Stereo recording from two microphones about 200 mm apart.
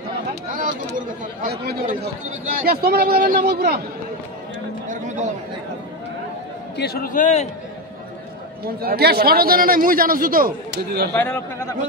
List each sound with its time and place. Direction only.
0.9 s a man's voice: 40° right (ahead or behind)
4.8 s a sound: 40° right (ahead or behind)
6.8 s a man's voice: 50° left (ahead or behind)
8.6 s a man's voice: 50° right (ahead or behind)
11.1 s a man's voice: 10° left (ahead or behind)